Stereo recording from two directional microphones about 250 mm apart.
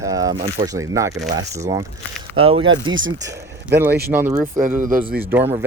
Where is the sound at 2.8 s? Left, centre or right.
Right.